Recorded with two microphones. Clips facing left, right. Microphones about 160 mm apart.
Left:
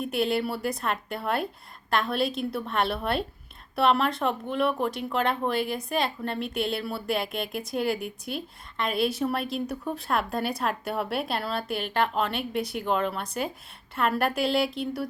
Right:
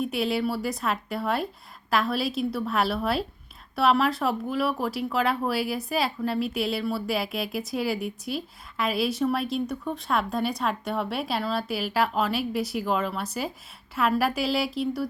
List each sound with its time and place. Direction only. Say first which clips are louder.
0.0 s speech: even; centre (ahead or behind)